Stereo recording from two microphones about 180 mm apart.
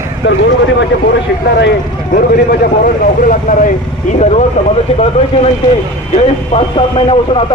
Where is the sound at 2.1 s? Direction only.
55° left (ahead or behind).